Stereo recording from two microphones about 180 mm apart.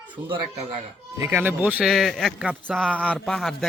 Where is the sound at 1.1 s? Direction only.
15° right (ahead or behind).